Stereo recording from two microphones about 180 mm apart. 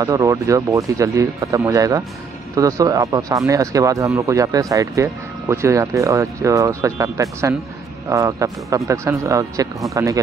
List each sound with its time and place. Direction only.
0.0 s speech: 20° right (ahead or behind)